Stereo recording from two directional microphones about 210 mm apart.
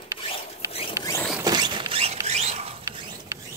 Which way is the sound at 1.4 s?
20° right (ahead or behind).